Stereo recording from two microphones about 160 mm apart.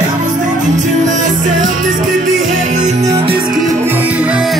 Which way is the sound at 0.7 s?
50° right (ahead or behind).